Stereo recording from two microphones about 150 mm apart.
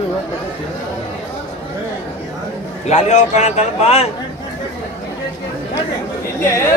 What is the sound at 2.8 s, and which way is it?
A man's voice, 50° left (ahead or behind).